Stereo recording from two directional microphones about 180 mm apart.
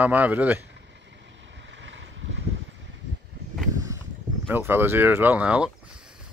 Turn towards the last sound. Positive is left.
turn(degrees=-5)  # may be behind; listen again after turning